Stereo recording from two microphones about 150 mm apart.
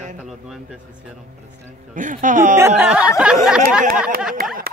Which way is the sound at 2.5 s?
15° right (ahead or behind).